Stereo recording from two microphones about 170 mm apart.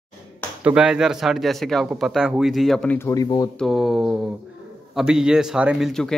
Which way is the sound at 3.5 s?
Centre (ahead or behind).